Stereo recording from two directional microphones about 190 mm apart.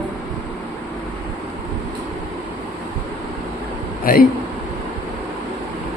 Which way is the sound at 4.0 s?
50° left (ahead or behind).